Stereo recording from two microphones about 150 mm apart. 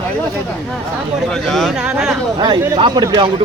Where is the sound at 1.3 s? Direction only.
Centre (ahead or behind).